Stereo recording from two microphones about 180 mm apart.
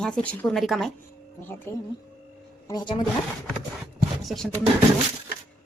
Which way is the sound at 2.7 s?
25° left (ahead or behind).